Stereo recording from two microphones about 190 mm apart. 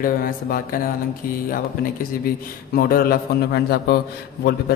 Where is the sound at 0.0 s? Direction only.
50° left (ahead or behind).